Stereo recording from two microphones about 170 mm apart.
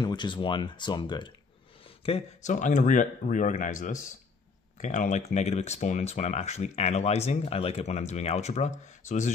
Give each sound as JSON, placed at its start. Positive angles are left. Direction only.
{"t": 0.0, "sound": "speech", "side_deg": 25}
{"t": 2.0, "sound": "speech", "side_deg": 40}